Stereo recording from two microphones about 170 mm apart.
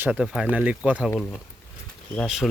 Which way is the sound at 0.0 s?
5° right (ahead or behind).